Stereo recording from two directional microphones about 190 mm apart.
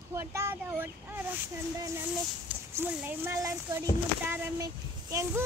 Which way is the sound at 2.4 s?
10° right (ahead or behind).